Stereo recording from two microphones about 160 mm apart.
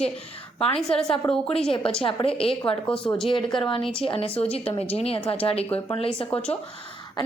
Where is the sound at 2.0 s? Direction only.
35° left (ahead or behind).